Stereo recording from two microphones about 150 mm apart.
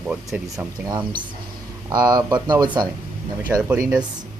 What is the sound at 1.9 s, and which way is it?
Speech, 25° right (ahead or behind).